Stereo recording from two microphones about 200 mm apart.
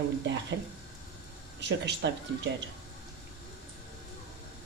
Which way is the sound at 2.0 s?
60° right (ahead or behind).